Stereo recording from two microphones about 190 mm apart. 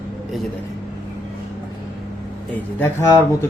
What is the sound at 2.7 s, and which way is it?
Speech, 10° left (ahead or behind).